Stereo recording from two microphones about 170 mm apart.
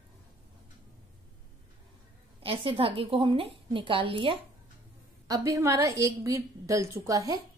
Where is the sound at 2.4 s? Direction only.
30° right (ahead or behind).